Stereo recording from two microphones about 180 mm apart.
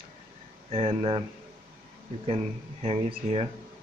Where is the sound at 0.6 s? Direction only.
35° right (ahead or behind).